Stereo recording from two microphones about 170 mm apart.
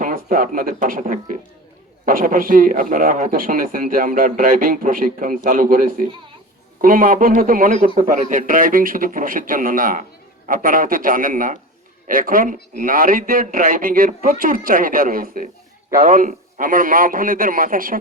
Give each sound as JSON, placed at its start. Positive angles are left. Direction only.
{"t": 0.0, "sound": "a man's voice", "side_deg": -50}